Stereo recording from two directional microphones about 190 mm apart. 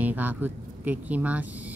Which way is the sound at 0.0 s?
10° right (ahead or behind).